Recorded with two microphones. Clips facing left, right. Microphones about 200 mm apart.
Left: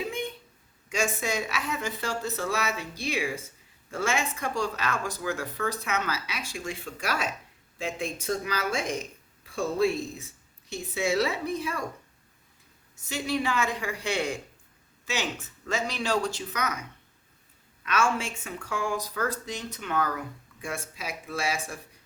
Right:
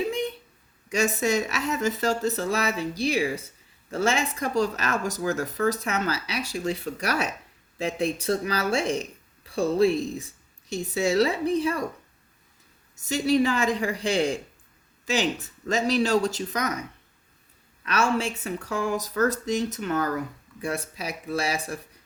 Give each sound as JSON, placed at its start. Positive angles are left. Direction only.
{"t": 0.9, "sound": "speech", "side_deg": -40}
{"t": 11.0, "sound": "speech", "side_deg": -35}
{"t": 13.1, "sound": "speech", "side_deg": -40}
{"t": 17.8, "sound": "speech", "side_deg": -35}